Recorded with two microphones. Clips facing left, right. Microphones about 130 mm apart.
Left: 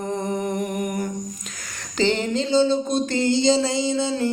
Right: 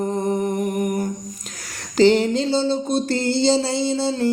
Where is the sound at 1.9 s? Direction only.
40° right (ahead or behind).